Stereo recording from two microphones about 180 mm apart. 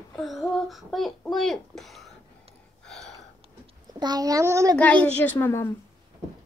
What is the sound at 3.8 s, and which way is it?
Speech, 25° right (ahead or behind).